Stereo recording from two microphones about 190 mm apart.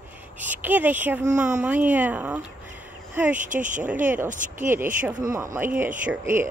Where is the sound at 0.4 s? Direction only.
10° right (ahead or behind).